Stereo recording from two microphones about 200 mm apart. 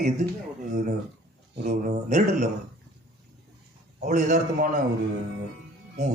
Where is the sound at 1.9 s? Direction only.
35° right (ahead or behind).